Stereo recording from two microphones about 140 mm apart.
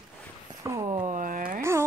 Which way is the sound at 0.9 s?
65° right (ahead or behind).